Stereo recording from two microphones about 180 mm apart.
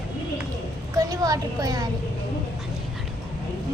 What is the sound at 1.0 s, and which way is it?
Speech, 20° right (ahead or behind).